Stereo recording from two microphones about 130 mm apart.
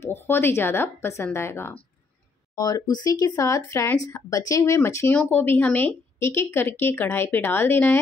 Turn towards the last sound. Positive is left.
turn(degrees=15)  # may be behind; listen again after turning